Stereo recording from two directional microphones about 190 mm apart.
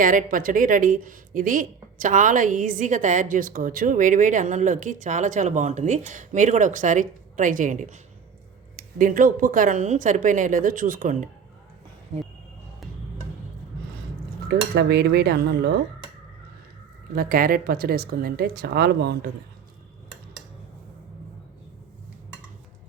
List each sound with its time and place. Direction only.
0.0 s a woman's voice: 45° right (ahead or behind)
14.4 s cutlery: 60° right (ahead or behind)
17.2 s a woman's voice: 50° right (ahead or behind)